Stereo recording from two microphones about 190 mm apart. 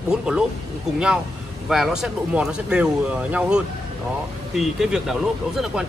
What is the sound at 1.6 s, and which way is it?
A man's voice, centre (ahead or behind).